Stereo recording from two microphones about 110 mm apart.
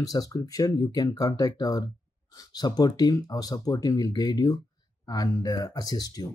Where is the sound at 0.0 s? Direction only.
35° left (ahead or behind).